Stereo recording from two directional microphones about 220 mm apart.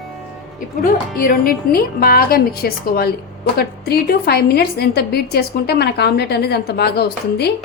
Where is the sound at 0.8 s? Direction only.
40° left (ahead or behind).